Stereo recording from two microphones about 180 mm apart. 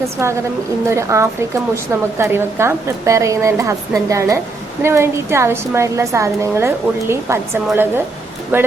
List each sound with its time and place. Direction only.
0.0 s a woman's voice: 15° right (ahead or behind)